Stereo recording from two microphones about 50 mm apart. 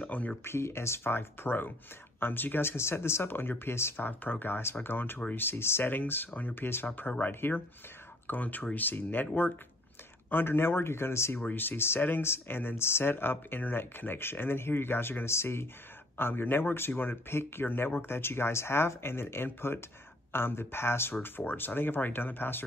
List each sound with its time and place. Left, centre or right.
0.0 s speech: left
0.4 s speech: left
4.0 s speech: left
10.3 s speech: left
11.5 s speech: left